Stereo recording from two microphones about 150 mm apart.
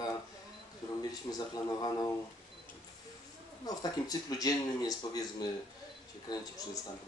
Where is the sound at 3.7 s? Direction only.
25° left (ahead or behind).